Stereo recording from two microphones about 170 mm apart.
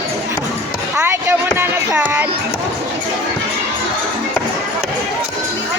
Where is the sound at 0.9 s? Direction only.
15° right (ahead or behind).